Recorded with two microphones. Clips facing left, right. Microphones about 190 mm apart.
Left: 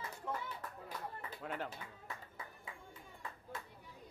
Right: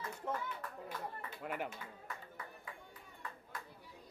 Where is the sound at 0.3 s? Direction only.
20° right (ahead or behind).